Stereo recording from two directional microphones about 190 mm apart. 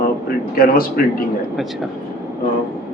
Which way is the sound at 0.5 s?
50° left (ahead or behind).